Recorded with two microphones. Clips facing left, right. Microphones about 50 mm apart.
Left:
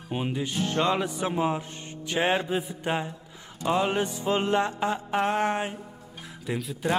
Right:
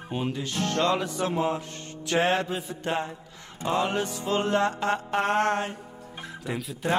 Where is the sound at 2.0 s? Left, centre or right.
Right.